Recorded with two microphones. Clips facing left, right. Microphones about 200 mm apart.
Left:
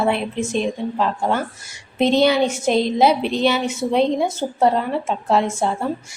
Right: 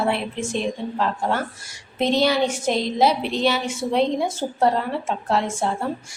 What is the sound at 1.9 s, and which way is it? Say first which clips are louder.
A woman's voice: left 4 dB; 25° left (ahead or behind).